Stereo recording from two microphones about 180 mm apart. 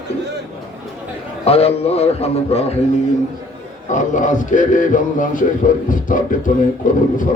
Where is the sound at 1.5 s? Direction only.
35° left (ahead or behind).